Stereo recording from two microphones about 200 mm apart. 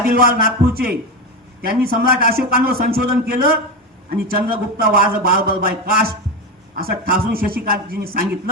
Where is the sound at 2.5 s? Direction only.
45° right (ahead or behind).